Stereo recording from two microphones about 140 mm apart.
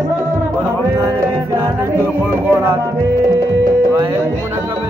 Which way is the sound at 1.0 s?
20° right (ahead or behind).